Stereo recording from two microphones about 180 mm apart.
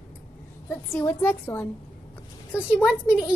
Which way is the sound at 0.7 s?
10° left (ahead or behind).